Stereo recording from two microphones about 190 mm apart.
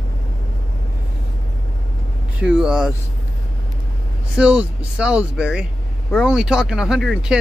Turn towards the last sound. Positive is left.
turn(degrees=0)  # may be behind; listen again after turning